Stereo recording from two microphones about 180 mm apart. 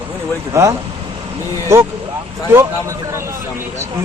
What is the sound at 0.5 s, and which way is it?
Speech, 15° right (ahead or behind).